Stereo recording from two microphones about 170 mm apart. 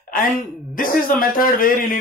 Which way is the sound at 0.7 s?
55° left (ahead or behind).